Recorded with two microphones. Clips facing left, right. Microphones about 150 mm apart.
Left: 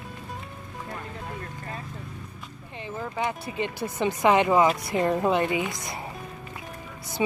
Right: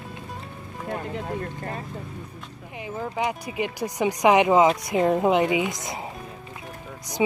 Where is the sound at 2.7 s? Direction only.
10° right (ahead or behind).